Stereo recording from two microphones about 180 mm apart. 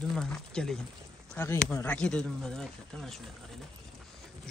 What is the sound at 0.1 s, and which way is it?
Speech, 5° left (ahead or behind).